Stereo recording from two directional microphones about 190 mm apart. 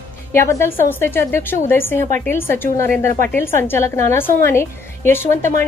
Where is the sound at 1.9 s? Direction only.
40° right (ahead or behind).